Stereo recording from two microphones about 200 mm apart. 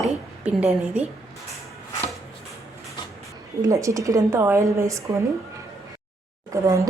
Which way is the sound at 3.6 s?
15° right (ahead or behind).